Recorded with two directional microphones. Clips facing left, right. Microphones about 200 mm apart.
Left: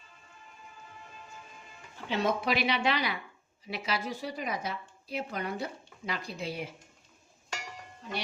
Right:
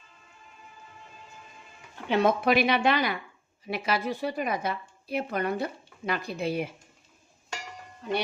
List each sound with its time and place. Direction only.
2.0 s speech: 55° right (ahead or behind)